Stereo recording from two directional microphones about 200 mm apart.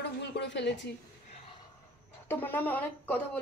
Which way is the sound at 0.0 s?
60° left (ahead or behind).